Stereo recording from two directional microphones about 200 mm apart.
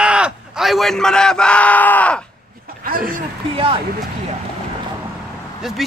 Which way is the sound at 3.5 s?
25° right (ahead or behind).